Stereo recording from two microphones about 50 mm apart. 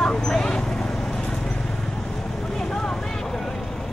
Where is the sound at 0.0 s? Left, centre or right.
Centre.